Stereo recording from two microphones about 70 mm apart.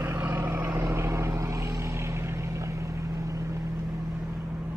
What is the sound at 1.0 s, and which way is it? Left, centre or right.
Vehicle, right.